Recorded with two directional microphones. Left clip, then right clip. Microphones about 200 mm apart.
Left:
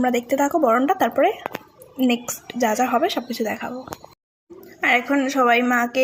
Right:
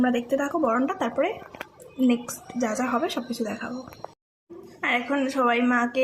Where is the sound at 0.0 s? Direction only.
25° left (ahead or behind).